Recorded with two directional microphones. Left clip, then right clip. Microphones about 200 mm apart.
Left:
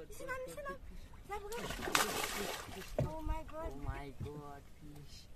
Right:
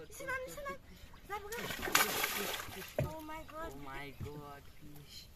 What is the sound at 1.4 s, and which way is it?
Speech, 20° left (ahead or behind).